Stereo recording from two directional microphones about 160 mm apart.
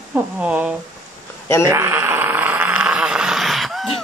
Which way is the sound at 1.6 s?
15° right (ahead or behind).